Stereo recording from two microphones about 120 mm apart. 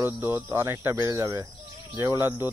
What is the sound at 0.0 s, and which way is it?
Speech, 15° right (ahead or behind).